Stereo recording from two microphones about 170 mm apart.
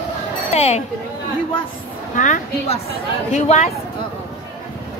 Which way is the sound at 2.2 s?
50° left (ahead or behind).